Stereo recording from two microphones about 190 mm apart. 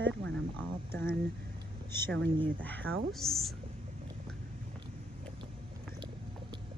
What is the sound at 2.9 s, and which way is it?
Speech, 90° right.